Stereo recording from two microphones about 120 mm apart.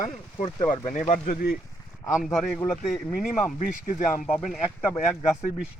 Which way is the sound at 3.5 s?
90° left.